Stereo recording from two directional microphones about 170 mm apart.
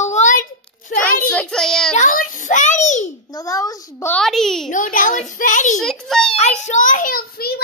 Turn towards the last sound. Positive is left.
turn(degrees=65)  # may be behind; listen again after turning